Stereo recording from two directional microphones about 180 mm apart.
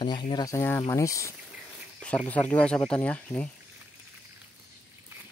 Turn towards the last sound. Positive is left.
turn(degrees=10)  # may be behind; listen again after turning